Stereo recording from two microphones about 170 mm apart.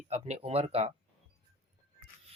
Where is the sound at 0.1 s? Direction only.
40° right (ahead or behind).